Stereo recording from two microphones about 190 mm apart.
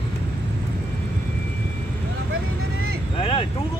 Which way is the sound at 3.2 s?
30° left (ahead or behind).